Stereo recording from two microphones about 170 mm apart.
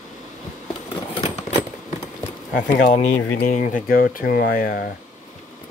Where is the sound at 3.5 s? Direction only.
50° left (ahead or behind).